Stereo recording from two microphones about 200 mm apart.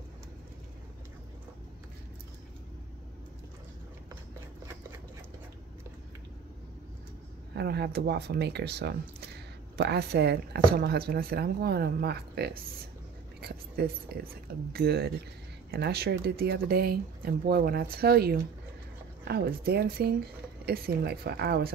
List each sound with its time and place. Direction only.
7.5 s a woman's voice: 55° right (ahead or behind)